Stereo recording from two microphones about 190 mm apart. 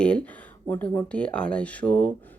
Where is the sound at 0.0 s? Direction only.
5° left (ahead or behind).